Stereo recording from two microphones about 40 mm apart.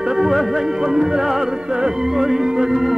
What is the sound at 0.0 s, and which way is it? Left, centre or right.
Music, centre.